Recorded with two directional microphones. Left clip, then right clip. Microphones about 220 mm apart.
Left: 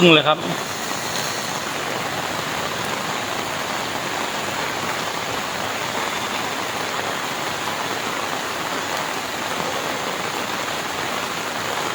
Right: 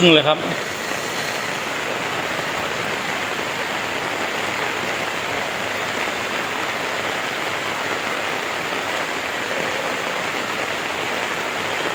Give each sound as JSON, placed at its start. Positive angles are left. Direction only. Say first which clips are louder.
{"t": 0.0, "sound": "speech", "louder": "even", "side_deg": 25}